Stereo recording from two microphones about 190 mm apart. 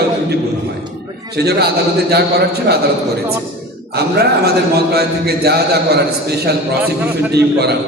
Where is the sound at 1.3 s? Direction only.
60° right (ahead or behind).